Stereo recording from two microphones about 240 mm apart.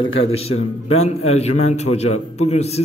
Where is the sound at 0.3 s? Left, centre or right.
Left.